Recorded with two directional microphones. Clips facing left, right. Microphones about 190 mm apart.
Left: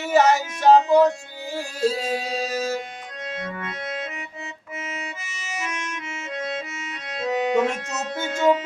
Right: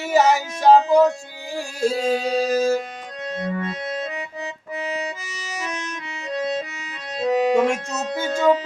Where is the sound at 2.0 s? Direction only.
30° right (ahead or behind).